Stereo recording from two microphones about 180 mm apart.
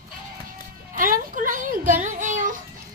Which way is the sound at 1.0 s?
50° right (ahead or behind).